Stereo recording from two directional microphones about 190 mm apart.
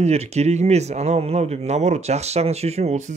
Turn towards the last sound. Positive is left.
turn(degrees=-35)  # may be behind; listen again after turning